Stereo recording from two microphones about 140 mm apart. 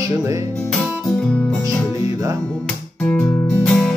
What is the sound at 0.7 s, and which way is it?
Guitar, 5° left (ahead or behind).